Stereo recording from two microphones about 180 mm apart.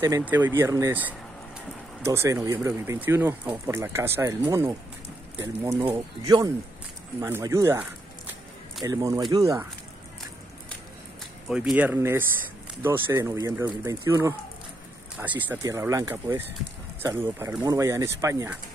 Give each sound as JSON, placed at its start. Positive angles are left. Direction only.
{"t": 0.2, "sound": "speech", "side_deg": -10}
{"t": 11.4, "sound": "speech", "side_deg": -5}